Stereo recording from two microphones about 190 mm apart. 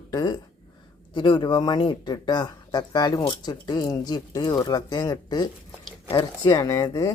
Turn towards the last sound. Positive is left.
turn(degrees=15)  # may be behind; listen again after turning